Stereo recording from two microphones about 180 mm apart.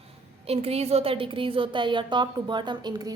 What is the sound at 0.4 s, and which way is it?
A woman's voice, 35° right (ahead or behind).